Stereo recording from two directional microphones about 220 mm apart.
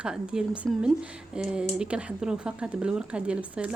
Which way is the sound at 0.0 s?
5° right (ahead or behind).